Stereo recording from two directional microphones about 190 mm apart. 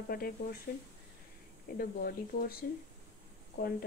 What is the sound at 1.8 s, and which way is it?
Speech, 50° left (ahead or behind).